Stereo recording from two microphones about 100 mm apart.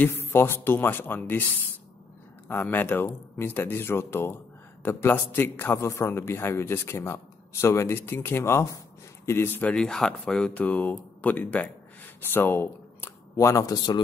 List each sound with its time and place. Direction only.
0.0 s a man's voice: 20° left (ahead or behind)
2.4 s a man's voice: 20° left (ahead or behind); by 14.0 s 40° left (ahead or behind)